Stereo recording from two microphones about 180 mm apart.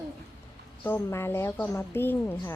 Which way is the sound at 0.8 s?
15° left (ahead or behind).